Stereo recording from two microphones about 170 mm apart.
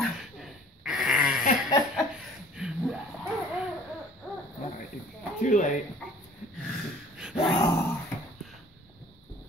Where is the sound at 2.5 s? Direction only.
5° right (ahead or behind).